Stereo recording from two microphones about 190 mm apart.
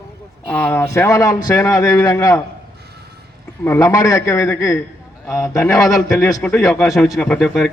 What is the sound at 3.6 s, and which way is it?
A man's voice, 15° left (ahead or behind).